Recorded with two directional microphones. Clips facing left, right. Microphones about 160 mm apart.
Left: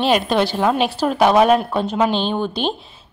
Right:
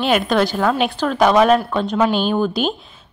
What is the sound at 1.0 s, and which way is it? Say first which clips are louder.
Speech: even; 5° left (ahead or behind).